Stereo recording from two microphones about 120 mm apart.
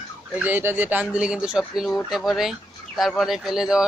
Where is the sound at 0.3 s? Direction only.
15° right (ahead or behind).